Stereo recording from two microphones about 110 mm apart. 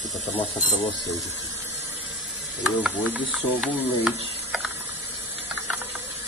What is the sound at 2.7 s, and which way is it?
Speech, 10° right (ahead or behind).